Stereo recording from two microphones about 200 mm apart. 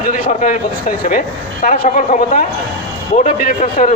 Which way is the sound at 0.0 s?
40° left (ahead or behind).